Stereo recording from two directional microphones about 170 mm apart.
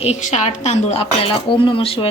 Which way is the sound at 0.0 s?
40° left (ahead or behind).